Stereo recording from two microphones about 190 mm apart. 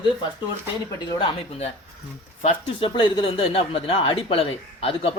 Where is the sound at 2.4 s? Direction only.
30° left (ahead or behind).